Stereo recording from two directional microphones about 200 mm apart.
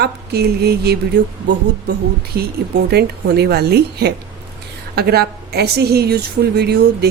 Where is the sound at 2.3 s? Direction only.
50° right (ahead or behind).